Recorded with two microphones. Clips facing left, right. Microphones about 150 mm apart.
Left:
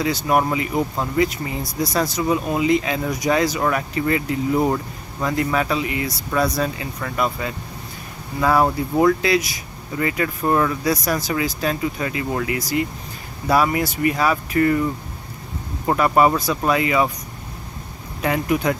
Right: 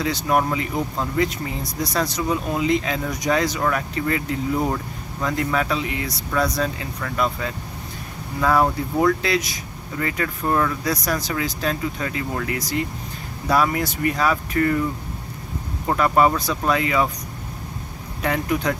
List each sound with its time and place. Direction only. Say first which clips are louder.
0.0 s speech: left 2 dB; 5° left (ahead or behind)
15.9 s speech: left 2 dB; 5° left (ahead or behind)
18.2 s speech: left 2 dB; 5° left (ahead or behind)